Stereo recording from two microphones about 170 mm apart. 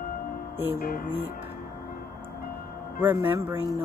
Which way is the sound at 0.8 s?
55° left (ahead or behind).